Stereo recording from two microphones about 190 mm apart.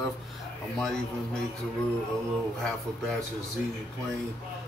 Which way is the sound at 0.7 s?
5° left (ahead or behind).